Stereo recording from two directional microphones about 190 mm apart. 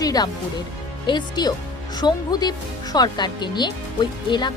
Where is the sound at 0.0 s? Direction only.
20° left (ahead or behind).